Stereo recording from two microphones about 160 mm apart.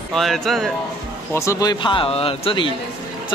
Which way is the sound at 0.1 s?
Centre (ahead or behind).